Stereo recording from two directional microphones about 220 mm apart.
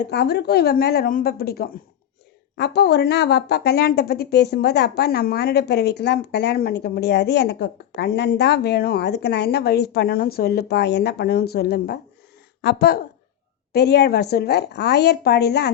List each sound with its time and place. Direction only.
0.1 s speech: 50° left (ahead or behind)